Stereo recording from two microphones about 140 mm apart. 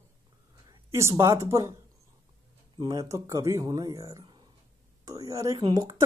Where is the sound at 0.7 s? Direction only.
20° right (ahead or behind).